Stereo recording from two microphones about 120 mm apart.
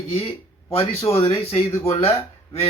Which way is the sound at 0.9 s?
25° left (ahead or behind).